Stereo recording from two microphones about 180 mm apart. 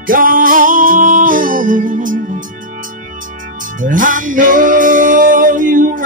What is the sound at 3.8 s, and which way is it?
Music, 45° right (ahead or behind).